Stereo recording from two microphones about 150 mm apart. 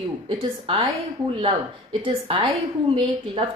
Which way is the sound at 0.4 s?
35° right (ahead or behind).